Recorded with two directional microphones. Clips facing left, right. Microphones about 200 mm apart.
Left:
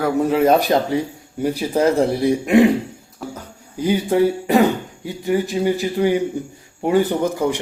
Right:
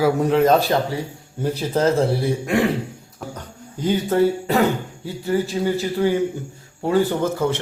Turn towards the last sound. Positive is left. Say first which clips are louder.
# left 1 dB
turn(degrees=15)  # may be behind; listen again after turning